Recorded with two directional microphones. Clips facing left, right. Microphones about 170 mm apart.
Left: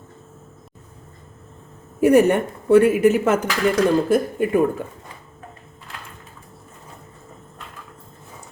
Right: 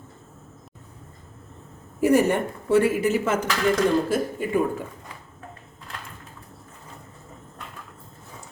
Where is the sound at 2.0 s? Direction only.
60° left (ahead or behind).